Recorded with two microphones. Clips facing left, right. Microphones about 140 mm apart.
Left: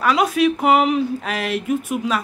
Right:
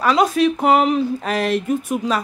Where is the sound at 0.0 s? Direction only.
35° right (ahead or behind).